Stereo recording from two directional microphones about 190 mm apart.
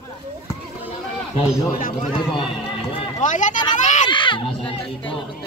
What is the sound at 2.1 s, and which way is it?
Speech, 25° left (ahead or behind).